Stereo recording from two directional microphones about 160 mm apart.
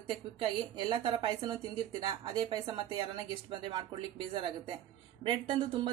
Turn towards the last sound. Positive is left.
turn(degrees=-30)  # may be behind; listen again after turning